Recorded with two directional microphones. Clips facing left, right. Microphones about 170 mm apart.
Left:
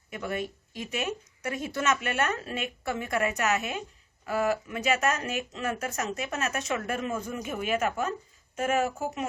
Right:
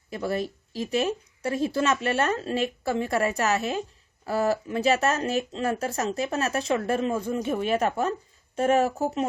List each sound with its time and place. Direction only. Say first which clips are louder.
0.1 s speech: right 5 dB; 35° right (ahead or behind)